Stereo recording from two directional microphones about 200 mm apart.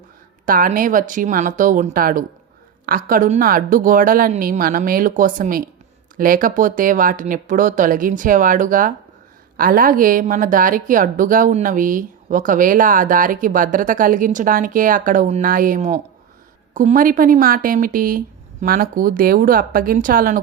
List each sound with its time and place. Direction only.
0.4 s speech: 45° right (ahead or behind)